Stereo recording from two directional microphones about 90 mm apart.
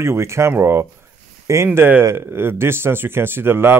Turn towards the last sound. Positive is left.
turn(degrees=-25)  # may be behind; listen again after turning